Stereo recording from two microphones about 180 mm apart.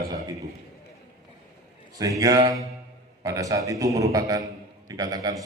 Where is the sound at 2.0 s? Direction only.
20° right (ahead or behind).